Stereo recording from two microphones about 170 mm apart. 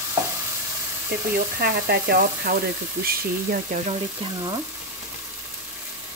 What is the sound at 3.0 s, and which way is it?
Speech, 55° right (ahead or behind).